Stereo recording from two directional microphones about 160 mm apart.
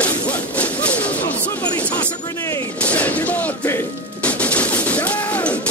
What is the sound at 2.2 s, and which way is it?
Music, 20° left (ahead or behind).